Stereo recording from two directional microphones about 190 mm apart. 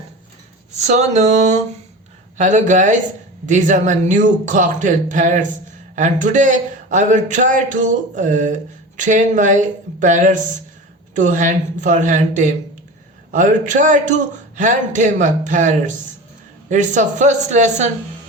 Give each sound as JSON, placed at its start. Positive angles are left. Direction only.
{"t": 0.8, "sound": "a man's voice", "side_deg": -35}